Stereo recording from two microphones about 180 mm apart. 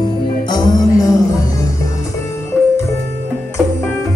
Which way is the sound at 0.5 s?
20° left (ahead or behind).